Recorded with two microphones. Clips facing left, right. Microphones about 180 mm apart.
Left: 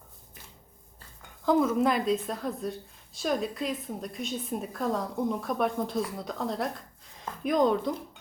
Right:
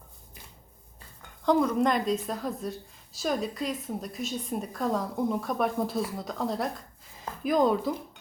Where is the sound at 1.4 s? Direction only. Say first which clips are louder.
Even; centre (ahead or behind).